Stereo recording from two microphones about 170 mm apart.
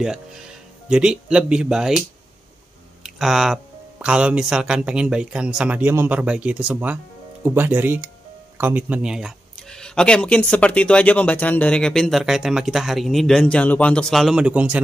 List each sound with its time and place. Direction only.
0.0 s speech: 5° right (ahead or behind)